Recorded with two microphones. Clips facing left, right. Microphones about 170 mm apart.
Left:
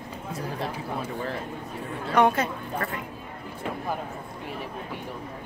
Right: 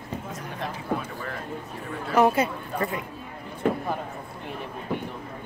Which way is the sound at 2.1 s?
10° right (ahead or behind).